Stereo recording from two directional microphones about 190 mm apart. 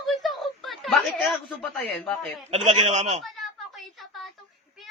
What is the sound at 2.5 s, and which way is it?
Speech, 35° right (ahead or behind).